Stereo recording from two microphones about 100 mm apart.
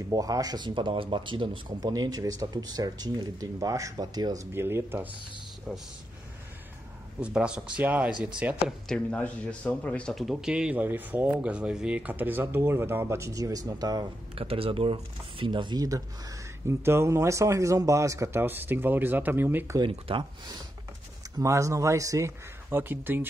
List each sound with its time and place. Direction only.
0.1 s speech: 35° right (ahead or behind); by 1.9 s 55° right (ahead or behind)
1.9 s speech: 40° right (ahead or behind)
4.6 s speech: 25° right (ahead or behind)
5.7 s speech: centre (ahead or behind)
7.2 s speech: 10° right (ahead or behind)
8.8 s speech: 10° left (ahead or behind)
10.1 s speech: 5° right (ahead or behind); by 14.0 s 40° right (ahead or behind)
14.3 s speech: 70° right (ahead or behind); by 19.8 s 20° right (ahead or behind)
19.9 s speech: 65° right (ahead or behind)
21.4 s speech: 30° right (ahead or behind)